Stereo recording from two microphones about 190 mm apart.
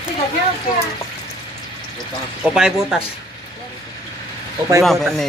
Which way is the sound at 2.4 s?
5° right (ahead or behind).